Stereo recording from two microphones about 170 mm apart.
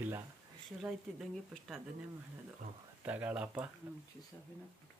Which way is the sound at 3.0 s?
10° right (ahead or behind).